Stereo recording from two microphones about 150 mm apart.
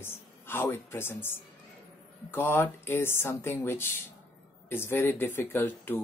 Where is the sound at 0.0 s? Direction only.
15° left (ahead or behind).